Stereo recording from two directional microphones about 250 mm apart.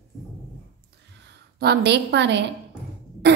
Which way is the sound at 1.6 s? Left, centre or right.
Right.